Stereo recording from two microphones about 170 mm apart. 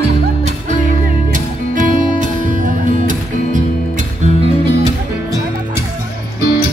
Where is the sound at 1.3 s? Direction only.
45° right (ahead or behind).